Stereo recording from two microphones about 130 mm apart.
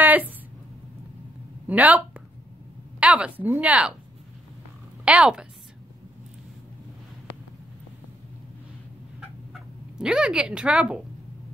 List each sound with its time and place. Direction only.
0.0 s a sound: 15° right (ahead or behind)
1.7 s a woman's voice: 10° right (ahead or behind)
5.0 s a woman's voice: 10° right (ahead or behind)
9.5 s speech: 5° right (ahead or behind)